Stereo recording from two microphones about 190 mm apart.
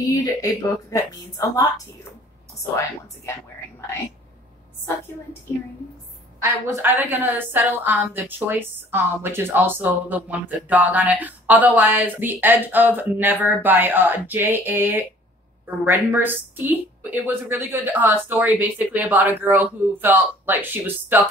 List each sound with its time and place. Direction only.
0.2 s speech: 20° left (ahead or behind)
6.4 s a woman's voice: 15° right (ahead or behind)